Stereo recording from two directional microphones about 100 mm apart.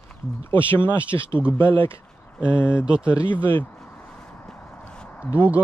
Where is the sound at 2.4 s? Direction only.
10° right (ahead or behind).